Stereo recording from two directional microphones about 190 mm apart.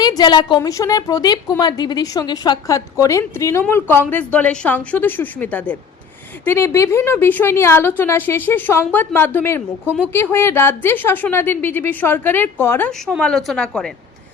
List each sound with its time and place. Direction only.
0.0 s a woman's voice: 20° left (ahead or behind); by 13.9 s 5° left (ahead or behind)